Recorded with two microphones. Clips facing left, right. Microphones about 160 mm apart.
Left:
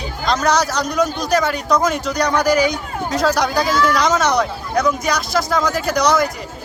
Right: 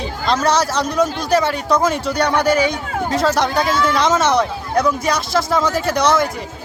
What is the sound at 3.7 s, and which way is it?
Speech, 25° right (ahead or behind).